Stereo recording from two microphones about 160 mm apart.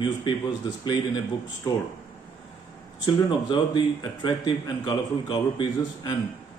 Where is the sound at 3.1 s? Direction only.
25° left (ahead or behind).